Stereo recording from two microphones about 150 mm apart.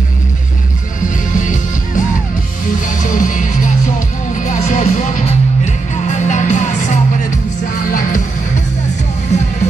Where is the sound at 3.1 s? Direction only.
60° left (ahead or behind).